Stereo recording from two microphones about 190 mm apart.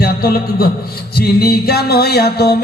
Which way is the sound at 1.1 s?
55° left (ahead or behind).